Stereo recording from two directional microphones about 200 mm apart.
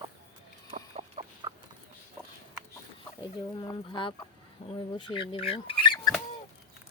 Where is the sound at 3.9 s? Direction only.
25° left (ahead or behind).